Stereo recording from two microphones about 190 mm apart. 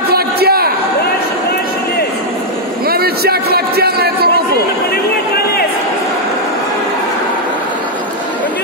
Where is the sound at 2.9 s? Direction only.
55° right (ahead or behind).